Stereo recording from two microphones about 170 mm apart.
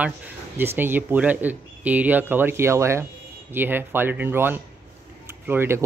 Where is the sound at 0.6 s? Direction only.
10° right (ahead or behind).